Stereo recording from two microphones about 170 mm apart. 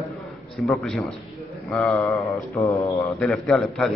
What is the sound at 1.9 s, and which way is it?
A man's voice, 20° left (ahead or behind).